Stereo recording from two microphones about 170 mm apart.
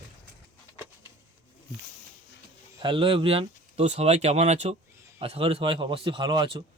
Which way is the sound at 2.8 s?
30° right (ahead or behind).